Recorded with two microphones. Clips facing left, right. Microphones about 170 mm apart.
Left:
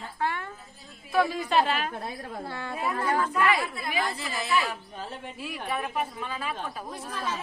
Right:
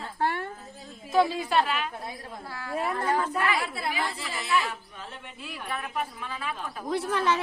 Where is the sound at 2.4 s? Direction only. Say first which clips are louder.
Even; 25° left (ahead or behind).